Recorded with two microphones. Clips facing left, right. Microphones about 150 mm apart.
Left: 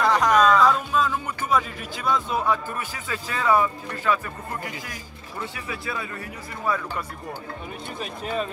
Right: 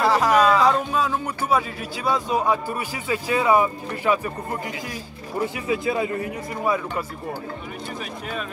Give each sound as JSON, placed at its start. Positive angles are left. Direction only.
{"t": 0.0, "sound": "speech", "side_deg": -5}
{"t": 8.0, "sound": "speech", "side_deg": 30}